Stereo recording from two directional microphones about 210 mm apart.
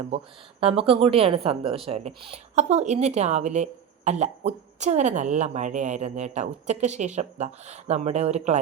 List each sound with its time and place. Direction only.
0.6 s speech: 25° right (ahead or behind)